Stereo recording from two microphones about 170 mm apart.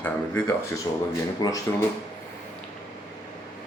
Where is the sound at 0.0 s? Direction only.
10° left (ahead or behind).